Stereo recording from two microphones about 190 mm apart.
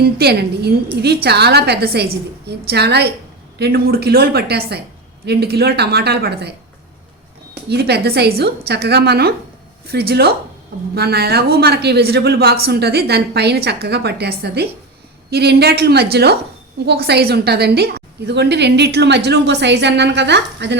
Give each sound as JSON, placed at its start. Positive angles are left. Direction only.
{"t": 0.0, "sound": "a woman's voice", "side_deg": -55}
{"t": 7.7, "sound": "a woman's voice", "side_deg": -60}